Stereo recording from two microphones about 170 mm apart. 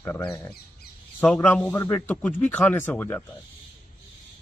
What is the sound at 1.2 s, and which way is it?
Speech, 10° left (ahead or behind).